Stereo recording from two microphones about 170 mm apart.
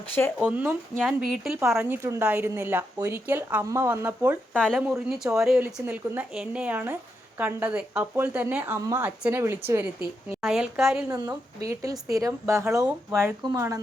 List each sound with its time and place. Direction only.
0.1 s speech: 10° left (ahead or behind)
0.4 s a woman's voice: 10° right (ahead or behind)
1.7 s a woman's voice: 15° right (ahead or behind)
4.5 s a woman's voice: 5° left (ahead or behind); by 9.8 s 15° right (ahead or behind)
10.4 s speech: centre (ahead or behind)
11.1 s a woman's voice: 20° right (ahead or behind)